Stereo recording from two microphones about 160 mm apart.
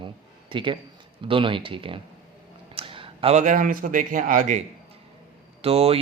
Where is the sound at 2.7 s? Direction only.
35° right (ahead or behind).